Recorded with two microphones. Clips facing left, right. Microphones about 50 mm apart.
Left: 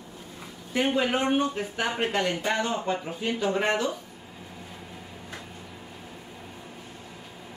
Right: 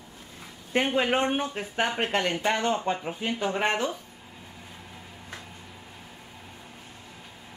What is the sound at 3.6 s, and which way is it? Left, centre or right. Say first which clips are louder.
Speech: left 1 dB; right.